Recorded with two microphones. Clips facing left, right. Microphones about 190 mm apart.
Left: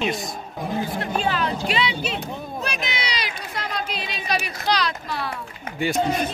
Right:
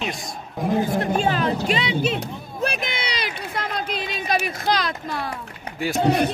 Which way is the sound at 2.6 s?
55° right (ahead or behind).